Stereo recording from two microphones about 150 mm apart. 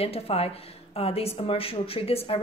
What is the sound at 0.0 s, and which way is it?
A woman's voice, 40° left (ahead or behind).